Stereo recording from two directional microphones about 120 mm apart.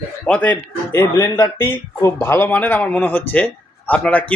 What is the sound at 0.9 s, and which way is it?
A man's voice, 25° left (ahead or behind).